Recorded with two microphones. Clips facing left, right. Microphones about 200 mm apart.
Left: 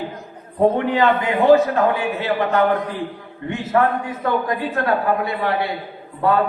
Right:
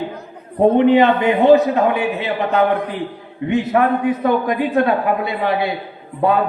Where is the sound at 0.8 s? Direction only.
20° right (ahead or behind).